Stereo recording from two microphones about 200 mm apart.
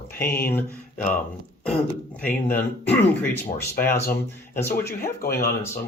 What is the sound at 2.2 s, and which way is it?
Speech, 10° left (ahead or behind).